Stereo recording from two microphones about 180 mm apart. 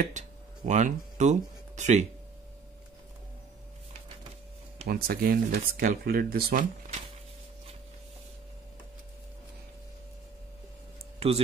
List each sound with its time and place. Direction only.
0.2 s speech: 40° right (ahead or behind)
4.8 s speech: 55° right (ahead or behind)
11.1 s speech: 35° right (ahead or behind)